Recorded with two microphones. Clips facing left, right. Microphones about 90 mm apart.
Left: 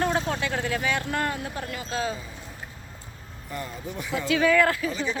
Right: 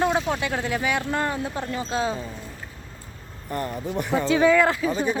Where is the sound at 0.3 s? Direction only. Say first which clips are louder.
Right 2 dB; 15° right (ahead or behind).